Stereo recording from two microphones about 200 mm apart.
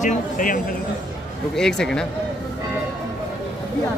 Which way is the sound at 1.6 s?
5° left (ahead or behind).